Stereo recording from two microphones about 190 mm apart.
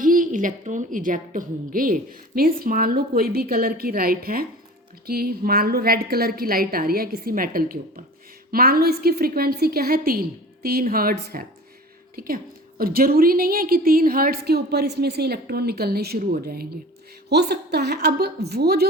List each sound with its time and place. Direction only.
0.0 s a woman's voice: 45° right (ahead or behind)